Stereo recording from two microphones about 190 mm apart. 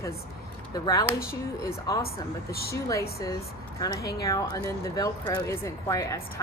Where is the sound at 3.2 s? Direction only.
20° left (ahead or behind).